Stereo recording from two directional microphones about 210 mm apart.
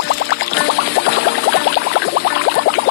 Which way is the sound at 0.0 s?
90° left.